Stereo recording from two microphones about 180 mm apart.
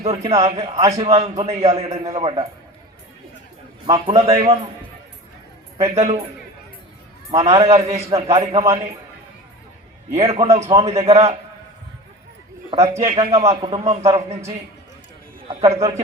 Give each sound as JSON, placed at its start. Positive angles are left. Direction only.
{"t": 0.0, "sound": "a man's voice", "side_deg": -35}
{"t": 0.8, "sound": "a man's voice", "side_deg": -20}
{"t": 1.0, "sound": "a man's voice", "side_deg": -35}
{"t": 3.8, "sound": "a man's voice", "side_deg": -20}
{"t": 5.7, "sound": "a man's voice", "side_deg": -35}
{"t": 7.3, "sound": "a man's voice", "side_deg": -35}
{"t": 10.1, "sound": "a man's voice", "side_deg": -35}
{"t": 12.9, "sound": "a man's voice", "side_deg": -15}
{"t": 13.1, "sound": "a man's voice", "side_deg": -35}
{"t": 15.4, "sound": "a man's voice", "side_deg": -35}